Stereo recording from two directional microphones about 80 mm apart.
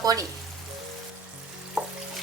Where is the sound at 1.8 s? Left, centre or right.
Centre.